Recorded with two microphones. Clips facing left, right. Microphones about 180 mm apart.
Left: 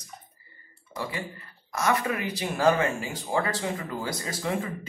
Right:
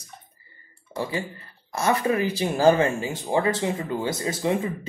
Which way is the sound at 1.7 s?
30° right (ahead or behind).